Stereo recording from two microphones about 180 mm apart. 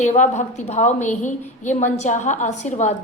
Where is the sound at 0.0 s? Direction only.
40° left (ahead or behind).